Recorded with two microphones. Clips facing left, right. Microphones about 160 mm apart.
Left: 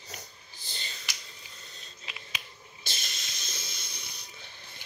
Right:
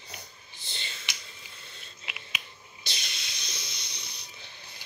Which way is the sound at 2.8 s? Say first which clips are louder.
Right 1 dB; 40° left (ahead or behind).